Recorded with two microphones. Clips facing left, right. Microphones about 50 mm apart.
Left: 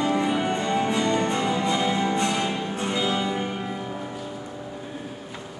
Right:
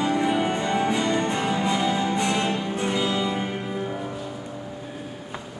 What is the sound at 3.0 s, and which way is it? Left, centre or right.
Music, centre.